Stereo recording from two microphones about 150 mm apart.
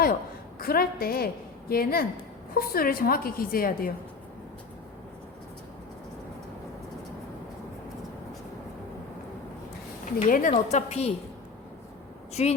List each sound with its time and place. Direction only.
0.6 s a woman's voice: 85° left
10.2 s a woman's voice: 65° left (ahead or behind); by 11.1 s 45° left (ahead or behind)
12.3 s speech: 45° left (ahead or behind)